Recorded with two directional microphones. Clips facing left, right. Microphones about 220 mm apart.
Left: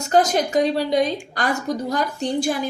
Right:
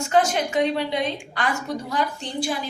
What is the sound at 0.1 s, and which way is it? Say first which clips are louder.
A woman's voice: left 4 dB; 40° left (ahead or behind).